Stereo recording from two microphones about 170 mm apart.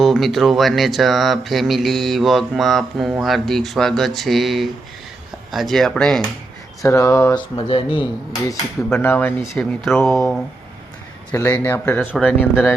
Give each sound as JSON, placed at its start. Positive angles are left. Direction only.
{"t": 0.0, "sound": "speech", "side_deg": 0}
{"t": 6.8, "sound": "speech", "side_deg": 20}
{"t": 7.5, "sound": "speech", "side_deg": 35}
{"t": 8.9, "sound": "speech", "side_deg": 10}
{"t": 11.3, "sound": "speech", "side_deg": 15}